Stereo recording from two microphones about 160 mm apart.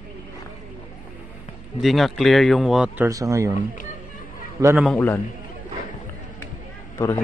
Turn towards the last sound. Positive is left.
turn(degrees=15)  # may be behind; listen again after turning